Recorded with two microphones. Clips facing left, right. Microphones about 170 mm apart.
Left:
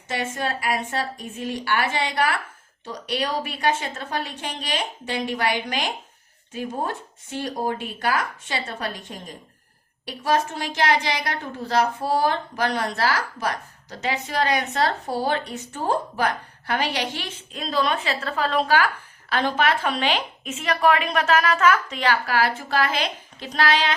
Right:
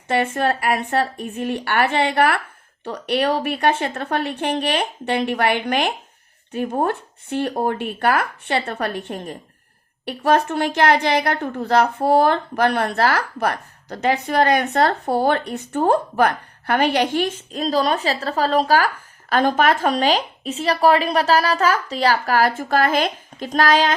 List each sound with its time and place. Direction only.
0.1 s a woman's voice: 60° right (ahead or behind)